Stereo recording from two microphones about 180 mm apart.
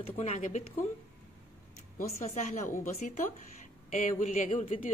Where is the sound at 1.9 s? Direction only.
40° left (ahead or behind).